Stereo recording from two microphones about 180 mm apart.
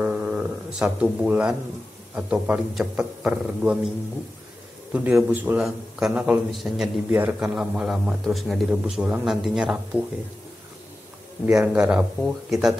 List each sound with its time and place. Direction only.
0.0 s a sound: 5° right (ahead or behind)
2.1 s speech: 5° right (ahead or behind)
4.9 s a man's voice: 10° right (ahead or behind)
11.4 s a man's voice: 10° right (ahead or behind)